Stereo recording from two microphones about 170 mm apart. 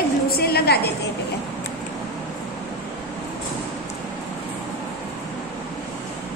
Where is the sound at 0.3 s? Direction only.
65° left (ahead or behind).